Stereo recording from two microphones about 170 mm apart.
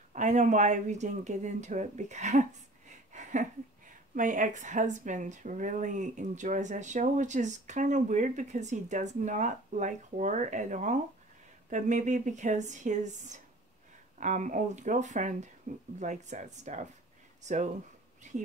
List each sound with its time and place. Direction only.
0.1 s a woman's voice: 45° right (ahead or behind)
3.1 s a sound: 45° right (ahead or behind)
4.1 s a woman's voice: 50° right (ahead or behind)